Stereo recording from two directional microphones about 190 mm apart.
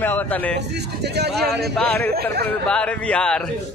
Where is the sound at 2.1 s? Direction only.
55° right (ahead or behind).